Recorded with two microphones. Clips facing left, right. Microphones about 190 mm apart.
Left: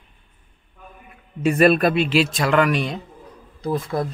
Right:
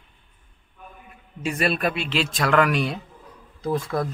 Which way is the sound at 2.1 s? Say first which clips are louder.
Left 4 dB; 5° left (ahead or behind).